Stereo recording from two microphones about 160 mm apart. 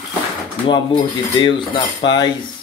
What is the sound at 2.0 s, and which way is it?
Cutlery, 25° left (ahead or behind).